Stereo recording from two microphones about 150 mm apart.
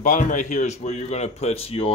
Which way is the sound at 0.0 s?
60° left (ahead or behind).